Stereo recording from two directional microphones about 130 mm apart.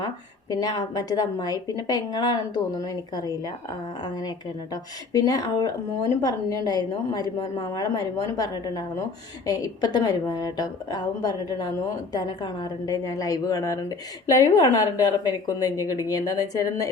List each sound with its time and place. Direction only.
0.5 s a woman's voice: 30° left (ahead or behind)
4.7 s a woman's voice: 30° left (ahead or behind)